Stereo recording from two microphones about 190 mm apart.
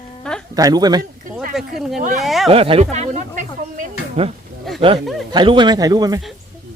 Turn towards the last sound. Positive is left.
turn(degrees=-20)  # may be behind; listen again after turning